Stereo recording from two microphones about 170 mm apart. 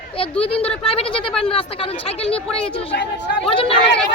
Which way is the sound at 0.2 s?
35° left (ahead or behind).